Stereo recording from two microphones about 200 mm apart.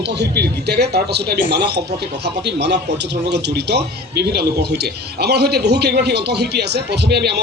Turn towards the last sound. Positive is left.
turn(degrees=-55)  # may be behind; listen again after turning